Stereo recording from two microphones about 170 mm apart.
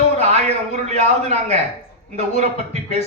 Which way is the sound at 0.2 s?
40° right (ahead or behind).